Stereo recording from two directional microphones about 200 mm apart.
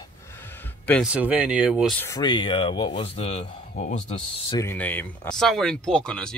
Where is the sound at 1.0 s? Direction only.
5° right (ahead or behind).